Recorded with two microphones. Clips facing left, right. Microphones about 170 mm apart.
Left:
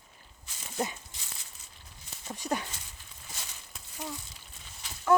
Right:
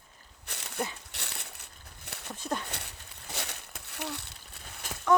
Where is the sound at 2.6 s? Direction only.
65° right (ahead or behind); by 4.9 s 50° right (ahead or behind).